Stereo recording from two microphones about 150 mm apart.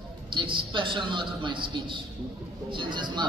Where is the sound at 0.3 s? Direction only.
35° right (ahead or behind).